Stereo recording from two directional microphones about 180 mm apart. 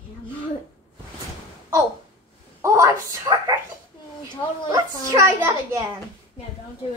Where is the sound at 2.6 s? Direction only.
15° right (ahead or behind).